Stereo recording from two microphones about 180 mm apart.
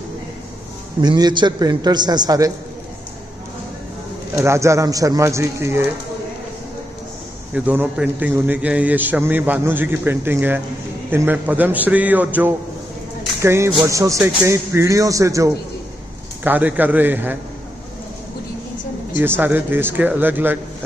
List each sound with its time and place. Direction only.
1.0 s a man's voice: 20° right (ahead or behind)
4.4 s a man's voice: 15° right (ahead or behind)
7.5 s a man's voice: 10° right (ahead or behind)
19.1 s a man's voice: 10° right (ahead or behind)